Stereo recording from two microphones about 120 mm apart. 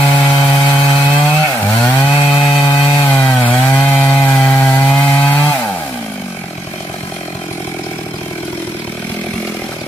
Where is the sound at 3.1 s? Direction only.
15° left (ahead or behind).